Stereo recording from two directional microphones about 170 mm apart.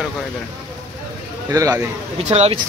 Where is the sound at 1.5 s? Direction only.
20° right (ahead or behind).